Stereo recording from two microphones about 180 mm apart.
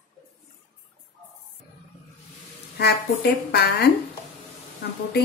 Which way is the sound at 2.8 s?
65° left (ahead or behind).